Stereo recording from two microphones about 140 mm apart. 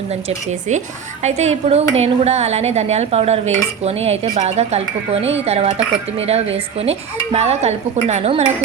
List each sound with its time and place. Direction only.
1.2 s speech: 50° right (ahead or behind)